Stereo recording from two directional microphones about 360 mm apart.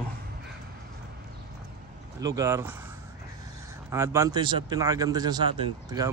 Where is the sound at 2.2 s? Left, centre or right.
Centre.